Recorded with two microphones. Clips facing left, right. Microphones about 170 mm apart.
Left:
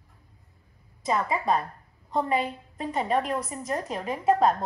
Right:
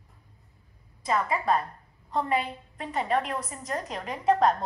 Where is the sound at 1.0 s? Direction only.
20° left (ahead or behind).